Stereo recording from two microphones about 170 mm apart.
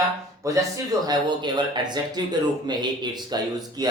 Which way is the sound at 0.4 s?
20° right (ahead or behind).